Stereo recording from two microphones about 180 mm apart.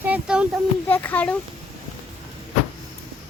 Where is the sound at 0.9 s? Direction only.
10° left (ahead or behind).